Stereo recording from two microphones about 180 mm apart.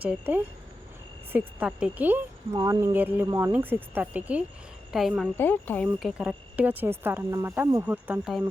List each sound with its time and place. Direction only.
0.0 s speech: 10° right (ahead or behind)
2.6 s speech: 25° right (ahead or behind)
2.8 s speech: 10° right (ahead or behind)
5.4 s speech: 10° left (ahead or behind)